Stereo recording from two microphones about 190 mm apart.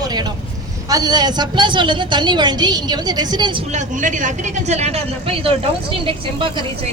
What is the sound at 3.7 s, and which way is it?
A woman's voice, 40° right (ahead or behind).